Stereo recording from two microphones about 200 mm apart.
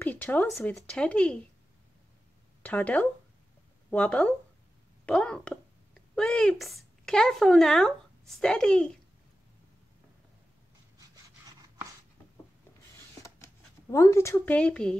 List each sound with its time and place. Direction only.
0.0 s speech: 10° left (ahead or behind)
2.6 s a child's voice: 5° left (ahead or behind)
11.0 s a sound: 15° right (ahead or behind)
13.2 s speech: 15° left (ahead or behind)